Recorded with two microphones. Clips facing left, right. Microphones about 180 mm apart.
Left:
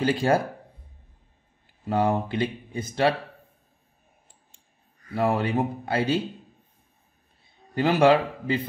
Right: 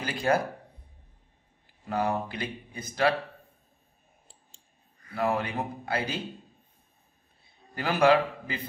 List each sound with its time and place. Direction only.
0.0 s speech: 30° left (ahead or behind)
1.9 s speech: 25° left (ahead or behind)
5.1 s speech: 30° left (ahead or behind)
7.7 s speech: 25° left (ahead or behind)